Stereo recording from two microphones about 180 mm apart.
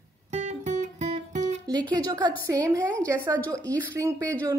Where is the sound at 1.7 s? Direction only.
25° right (ahead or behind).